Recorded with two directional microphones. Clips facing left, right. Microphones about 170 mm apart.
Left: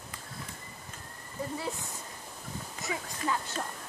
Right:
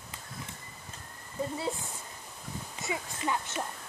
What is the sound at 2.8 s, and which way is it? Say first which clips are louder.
Speech: right 1 dB; 20° right (ahead or behind).